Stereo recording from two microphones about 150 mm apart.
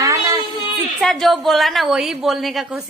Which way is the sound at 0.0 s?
20° right (ahead or behind).